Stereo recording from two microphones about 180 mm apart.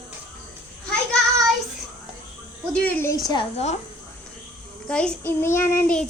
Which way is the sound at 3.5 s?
40° left (ahead or behind).